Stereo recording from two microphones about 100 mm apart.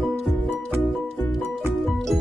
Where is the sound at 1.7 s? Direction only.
Centre (ahead or behind).